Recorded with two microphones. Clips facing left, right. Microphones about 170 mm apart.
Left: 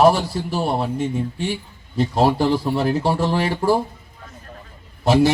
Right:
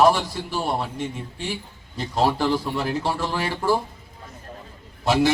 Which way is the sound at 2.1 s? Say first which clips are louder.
Left 3 dB; 40° left (ahead or behind).